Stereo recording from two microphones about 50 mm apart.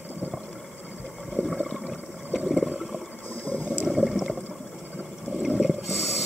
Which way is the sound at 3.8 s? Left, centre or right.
Centre.